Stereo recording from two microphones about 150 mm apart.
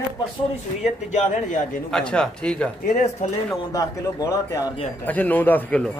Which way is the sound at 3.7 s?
25° left (ahead or behind).